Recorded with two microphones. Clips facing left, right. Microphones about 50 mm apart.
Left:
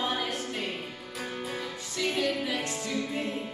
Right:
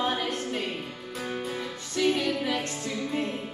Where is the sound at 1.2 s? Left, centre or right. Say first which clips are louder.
Right 2 dB; centre.